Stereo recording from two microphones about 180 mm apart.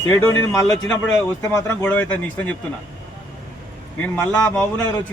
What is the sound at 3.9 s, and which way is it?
A man's voice, 10° left (ahead or behind).